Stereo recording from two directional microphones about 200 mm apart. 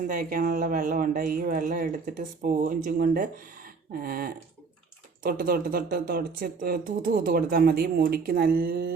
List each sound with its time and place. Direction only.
0.1 s speech: 45° right (ahead or behind)